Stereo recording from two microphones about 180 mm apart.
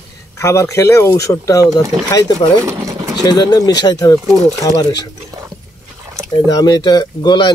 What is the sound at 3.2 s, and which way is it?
Speech, 20° left (ahead or behind).